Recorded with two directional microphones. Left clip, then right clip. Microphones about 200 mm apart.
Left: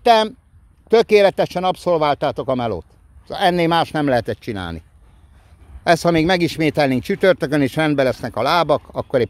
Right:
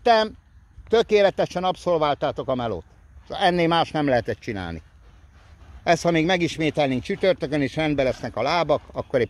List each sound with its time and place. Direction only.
0.0 s a woman's voice: 25° left (ahead or behind)
5.9 s speech: 25° left (ahead or behind)